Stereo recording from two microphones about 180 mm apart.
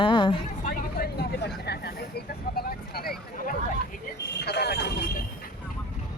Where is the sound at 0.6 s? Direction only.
55° left (ahead or behind).